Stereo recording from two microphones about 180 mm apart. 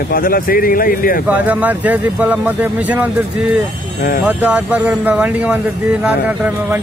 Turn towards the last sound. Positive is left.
turn(degrees=-10)  # may be behind; listen again after turning